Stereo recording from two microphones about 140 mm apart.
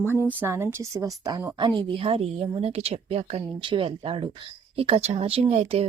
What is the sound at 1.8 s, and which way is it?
A woman's voice, 40° right (ahead or behind).